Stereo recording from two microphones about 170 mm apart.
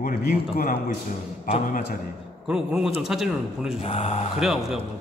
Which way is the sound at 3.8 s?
40° left (ahead or behind).